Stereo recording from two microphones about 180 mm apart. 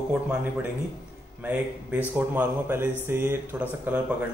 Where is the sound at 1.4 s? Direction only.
10° right (ahead or behind).